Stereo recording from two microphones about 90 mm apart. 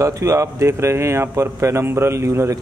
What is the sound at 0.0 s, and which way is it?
Speech, 35° right (ahead or behind).